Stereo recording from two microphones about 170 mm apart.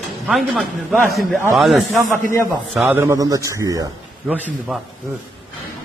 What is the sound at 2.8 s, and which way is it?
Speech, 15° right (ahead or behind).